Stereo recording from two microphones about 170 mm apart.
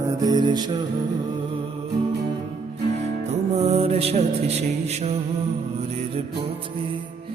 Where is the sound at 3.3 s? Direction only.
35° right (ahead or behind).